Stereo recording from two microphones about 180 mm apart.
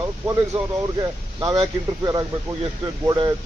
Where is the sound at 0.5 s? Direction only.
30° right (ahead or behind).